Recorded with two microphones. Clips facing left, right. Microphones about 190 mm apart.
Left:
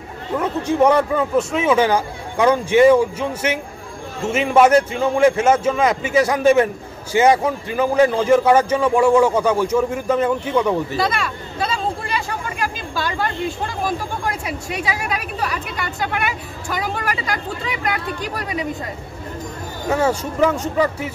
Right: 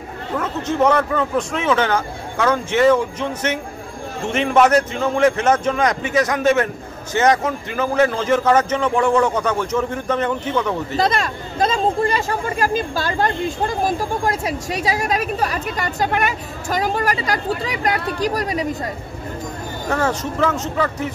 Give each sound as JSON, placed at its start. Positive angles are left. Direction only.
{"t": 0.4, "sound": "a man's voice", "side_deg": 15}
{"t": 11.0, "sound": "speech", "side_deg": -45}
{"t": 19.9, "sound": "a man's voice", "side_deg": 10}